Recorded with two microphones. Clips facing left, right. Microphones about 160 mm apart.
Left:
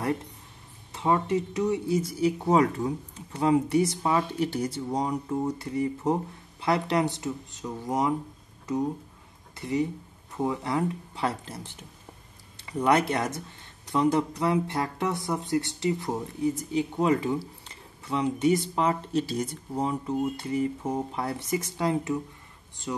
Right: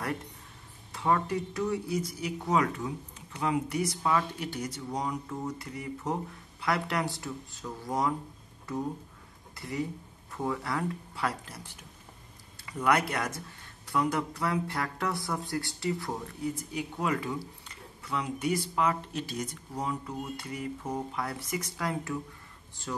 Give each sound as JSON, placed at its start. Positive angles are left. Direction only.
{"t": 0.9, "sound": "speech", "side_deg": 20}
{"t": 9.6, "sound": "speech", "side_deg": 20}